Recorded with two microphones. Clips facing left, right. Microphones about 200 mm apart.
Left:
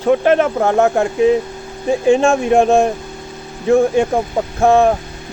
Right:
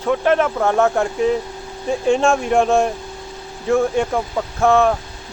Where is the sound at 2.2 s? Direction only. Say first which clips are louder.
Left 4 dB; 25° left (ahead or behind).